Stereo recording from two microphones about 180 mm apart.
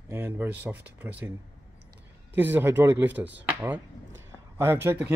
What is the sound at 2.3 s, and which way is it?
Speech, 10° right (ahead or behind).